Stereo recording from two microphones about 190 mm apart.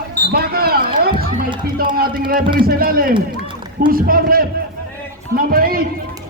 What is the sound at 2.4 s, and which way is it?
Speech, 25° right (ahead or behind).